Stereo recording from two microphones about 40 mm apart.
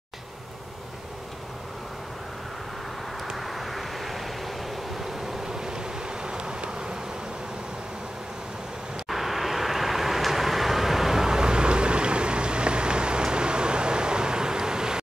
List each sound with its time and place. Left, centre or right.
3.3 s vehicle: centre
9.1 s vehicle: centre